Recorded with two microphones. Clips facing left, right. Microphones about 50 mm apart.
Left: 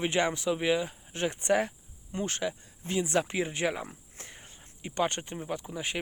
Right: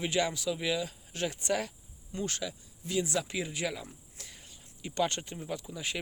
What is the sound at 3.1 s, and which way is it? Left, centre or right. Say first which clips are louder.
Cricket: left 5 dB; left.